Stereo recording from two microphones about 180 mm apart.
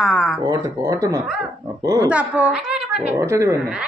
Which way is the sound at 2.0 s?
5° right (ahead or behind).